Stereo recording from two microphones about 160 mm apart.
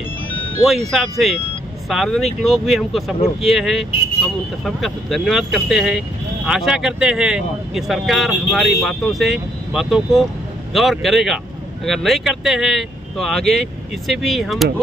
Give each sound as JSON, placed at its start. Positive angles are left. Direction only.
{"t": 0.9, "sound": "speech", "side_deg": 0}